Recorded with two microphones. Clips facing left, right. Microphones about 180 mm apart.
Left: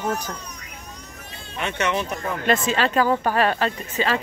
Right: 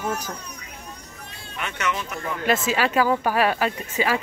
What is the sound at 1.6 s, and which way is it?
Speech, 25° left (ahead or behind).